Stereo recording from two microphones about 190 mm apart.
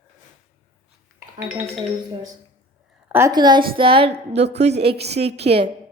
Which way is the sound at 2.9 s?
10° right (ahead or behind).